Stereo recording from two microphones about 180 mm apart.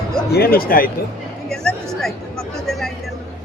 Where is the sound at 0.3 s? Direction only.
60° left (ahead or behind).